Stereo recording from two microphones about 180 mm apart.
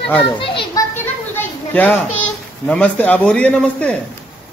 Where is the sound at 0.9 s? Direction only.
10° left (ahead or behind).